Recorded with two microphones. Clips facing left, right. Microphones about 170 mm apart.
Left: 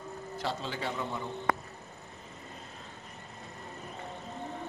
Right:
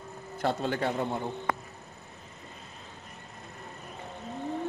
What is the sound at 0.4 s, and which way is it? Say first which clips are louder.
Speech: right 7 dB; 55° right (ahead or behind).